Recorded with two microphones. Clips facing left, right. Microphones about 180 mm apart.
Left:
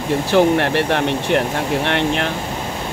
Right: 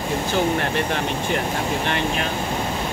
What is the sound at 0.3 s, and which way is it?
Speech, 70° left (ahead or behind).